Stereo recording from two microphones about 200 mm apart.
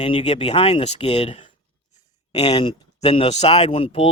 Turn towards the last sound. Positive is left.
turn(degrees=30)  # may be behind; listen again after turning